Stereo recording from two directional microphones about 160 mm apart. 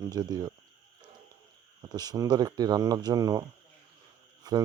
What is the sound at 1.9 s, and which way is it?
Speech, 25° right (ahead or behind).